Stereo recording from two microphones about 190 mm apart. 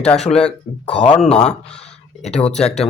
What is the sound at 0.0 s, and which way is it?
Speech, 5° left (ahead or behind).